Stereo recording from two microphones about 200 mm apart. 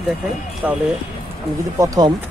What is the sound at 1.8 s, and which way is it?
Speech, 20° right (ahead or behind).